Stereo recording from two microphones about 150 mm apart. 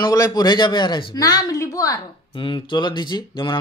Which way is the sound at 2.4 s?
35° left (ahead or behind).